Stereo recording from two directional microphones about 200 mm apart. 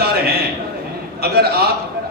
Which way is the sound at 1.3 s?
50° right (ahead or behind).